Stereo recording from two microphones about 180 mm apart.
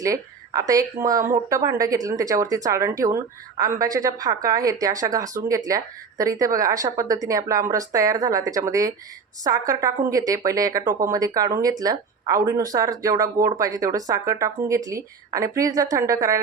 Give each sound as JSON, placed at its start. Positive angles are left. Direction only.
{"t": 0.0, "sound": "speech", "side_deg": -20}